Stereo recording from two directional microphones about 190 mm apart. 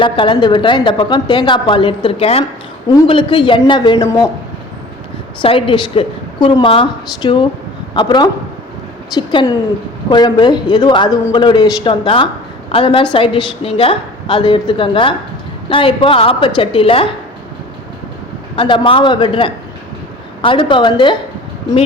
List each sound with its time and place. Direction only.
0.0 s a woman's voice: 25° left (ahead or behind)
5.4 s a woman's voice: 25° left (ahead or behind)
18.5 s a woman's voice: 25° left (ahead or behind)